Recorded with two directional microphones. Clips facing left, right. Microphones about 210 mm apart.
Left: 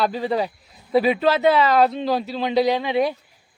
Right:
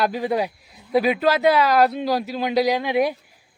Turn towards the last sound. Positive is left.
turn(degrees=-10)  # may be behind; listen again after turning